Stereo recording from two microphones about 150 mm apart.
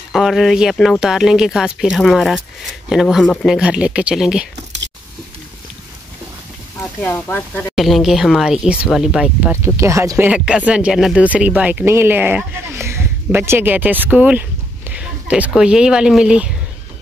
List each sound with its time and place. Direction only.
0.1 s speech: centre (ahead or behind)
6.8 s speech: 10° left (ahead or behind)
7.7 s speech: centre (ahead or behind)
9.8 s speech: 20° right (ahead or behind)
10.3 s speech: 5° right (ahead or behind)